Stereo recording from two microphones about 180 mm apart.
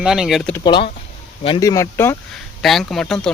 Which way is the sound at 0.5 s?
25° left (ahead or behind).